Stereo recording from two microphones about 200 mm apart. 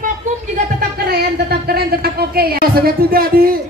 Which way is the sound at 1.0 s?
50° right (ahead or behind).